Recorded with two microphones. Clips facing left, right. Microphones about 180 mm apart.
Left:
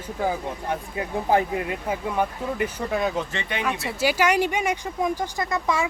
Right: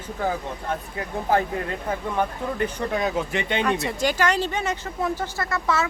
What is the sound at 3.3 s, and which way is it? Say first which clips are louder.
Speech: right 5 dB; 15° right (ahead or behind).